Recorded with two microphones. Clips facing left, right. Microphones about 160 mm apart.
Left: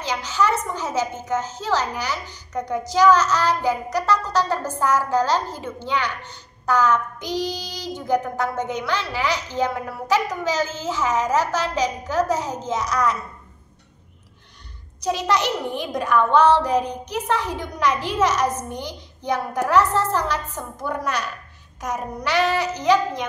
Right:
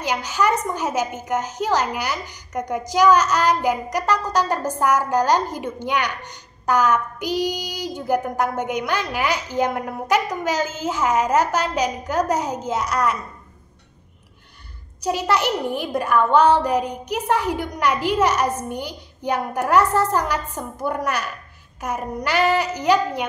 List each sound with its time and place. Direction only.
0.0 s a woman's voice: 10° right (ahead or behind)
15.0 s a woman's voice: 10° right (ahead or behind)